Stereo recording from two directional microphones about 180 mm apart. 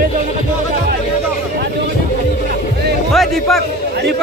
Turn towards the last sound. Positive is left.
turn(degrees=0)  # may be behind; listen again after turning